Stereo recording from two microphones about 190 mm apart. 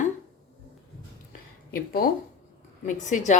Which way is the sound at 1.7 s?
50° left (ahead or behind).